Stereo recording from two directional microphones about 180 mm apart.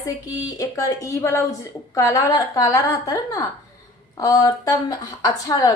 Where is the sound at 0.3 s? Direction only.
20° left (ahead or behind).